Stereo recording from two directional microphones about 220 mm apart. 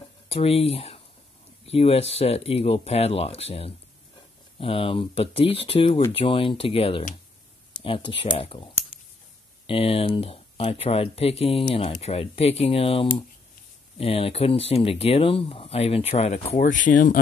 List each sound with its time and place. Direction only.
0.3 s speech: 25° left (ahead or behind)
9.7 s speech: 25° left (ahead or behind)